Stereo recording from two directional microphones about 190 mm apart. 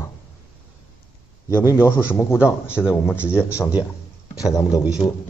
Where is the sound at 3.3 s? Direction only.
15° left (ahead or behind).